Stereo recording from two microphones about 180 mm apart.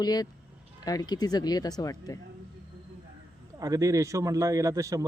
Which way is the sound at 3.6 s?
20° right (ahead or behind).